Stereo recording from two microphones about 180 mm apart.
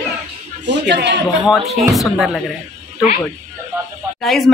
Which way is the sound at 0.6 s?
75° right (ahead or behind).